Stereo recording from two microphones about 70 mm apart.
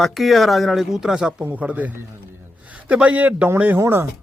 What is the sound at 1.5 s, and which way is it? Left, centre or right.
Speech, right.